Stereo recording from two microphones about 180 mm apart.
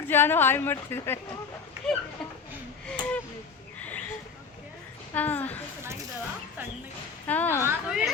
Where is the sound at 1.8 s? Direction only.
Centre (ahead or behind).